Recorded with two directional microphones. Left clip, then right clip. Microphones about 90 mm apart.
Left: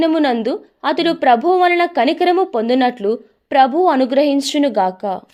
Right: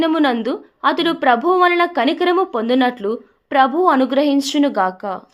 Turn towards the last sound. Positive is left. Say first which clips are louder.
# left 2 dB
turn(degrees=35)  # may be behind; listen again after turning